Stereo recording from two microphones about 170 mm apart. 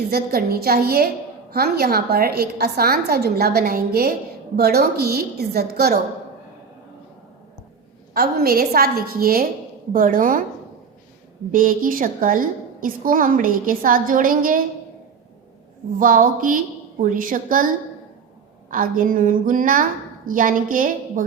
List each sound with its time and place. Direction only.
0.1 s a woman's voice: 65° right (ahead or behind)
8.1 s a woman's voice: 65° right (ahead or behind)
11.5 s a woman's voice: 55° right (ahead or behind)
16.0 s a woman's voice: 55° right (ahead or behind)
18.7 s a woman's voice: 55° right (ahead or behind)